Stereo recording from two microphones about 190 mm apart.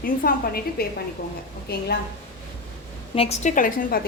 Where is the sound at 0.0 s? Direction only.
50° left (ahead or behind).